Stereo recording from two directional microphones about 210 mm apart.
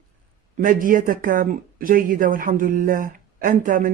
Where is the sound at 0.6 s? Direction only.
40° right (ahead or behind).